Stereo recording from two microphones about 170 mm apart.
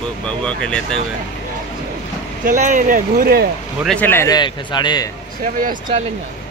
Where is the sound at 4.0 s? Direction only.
15° left (ahead or behind).